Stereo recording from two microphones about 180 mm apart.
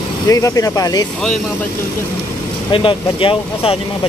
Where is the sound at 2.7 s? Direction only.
30° left (ahead or behind).